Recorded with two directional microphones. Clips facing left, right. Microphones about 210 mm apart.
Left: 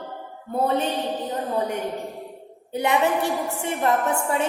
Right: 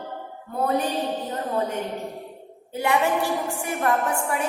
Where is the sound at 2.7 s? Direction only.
20° left (ahead or behind).